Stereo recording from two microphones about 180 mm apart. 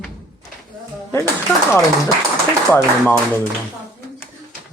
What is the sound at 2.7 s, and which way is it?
Speech, 10° left (ahead or behind).